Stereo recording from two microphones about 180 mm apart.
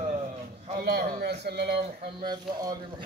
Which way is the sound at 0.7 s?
60° right (ahead or behind).